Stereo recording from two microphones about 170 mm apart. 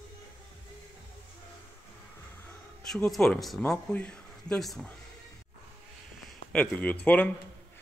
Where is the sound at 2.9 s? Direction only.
Centre (ahead or behind).